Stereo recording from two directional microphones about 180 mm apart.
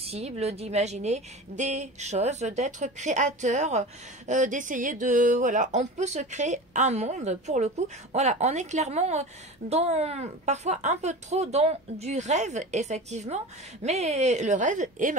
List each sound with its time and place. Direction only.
0.0 s speech: 35° right (ahead or behind)